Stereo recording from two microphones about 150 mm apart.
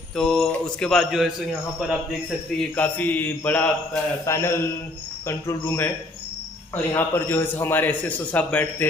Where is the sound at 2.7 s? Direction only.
10° left (ahead or behind).